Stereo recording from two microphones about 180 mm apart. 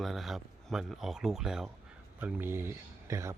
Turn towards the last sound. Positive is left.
turn(degrees=-15)  # may be behind; listen again after turning